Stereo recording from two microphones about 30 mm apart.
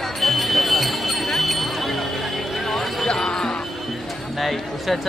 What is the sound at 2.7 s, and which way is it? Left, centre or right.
Basketball bounce, centre.